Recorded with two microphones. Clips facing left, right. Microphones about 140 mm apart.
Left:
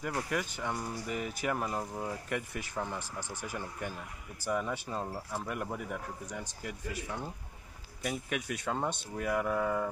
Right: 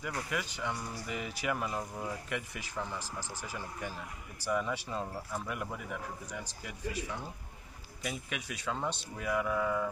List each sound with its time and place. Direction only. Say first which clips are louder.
0.3 s speech: left 2 dB; 45° left (ahead or behind)
1.8 s speech: left 2 dB; 25° left (ahead or behind)
2.2 s speech: left 3 dB; 45° left (ahead or behind)
4.5 s speech: even; 40° left (ahead or behind)
8.0 s speech: left 4 dB; 45° left (ahead or behind)